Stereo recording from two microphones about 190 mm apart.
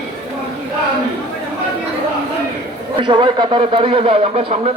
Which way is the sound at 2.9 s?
25° right (ahead or behind).